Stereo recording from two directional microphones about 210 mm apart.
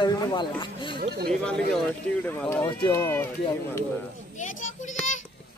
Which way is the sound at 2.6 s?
20° left (ahead or behind).